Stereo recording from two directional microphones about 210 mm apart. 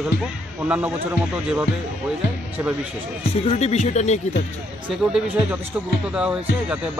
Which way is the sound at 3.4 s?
30° left (ahead or behind).